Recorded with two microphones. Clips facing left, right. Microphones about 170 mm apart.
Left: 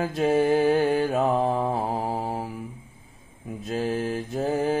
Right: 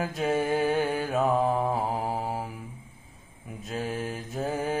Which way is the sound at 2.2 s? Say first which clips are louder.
Left 2 dB; 30° left (ahead or behind).